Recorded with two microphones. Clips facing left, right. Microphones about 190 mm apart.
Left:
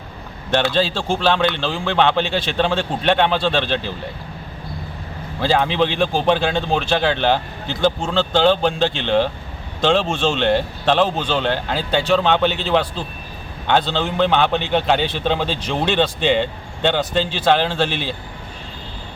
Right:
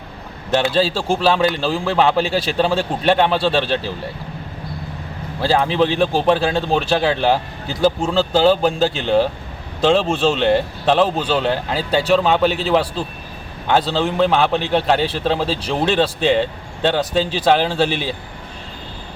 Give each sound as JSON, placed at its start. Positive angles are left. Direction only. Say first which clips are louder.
{"t": 0.7, "sound": "a man's voice", "louder": "right 2 dB", "side_deg": -5}
{"t": 5.4, "sound": "a man's voice", "louder": "right 1 dB", "side_deg": 0}
{"t": 15.4, "sound": "speech", "louder": "right 2 dB", "side_deg": -35}
{"t": 15.7, "sound": "a man's voice", "louder": "right 1 dB", "side_deg": 0}